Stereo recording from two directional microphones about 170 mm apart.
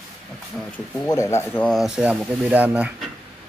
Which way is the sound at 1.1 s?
15° left (ahead or behind).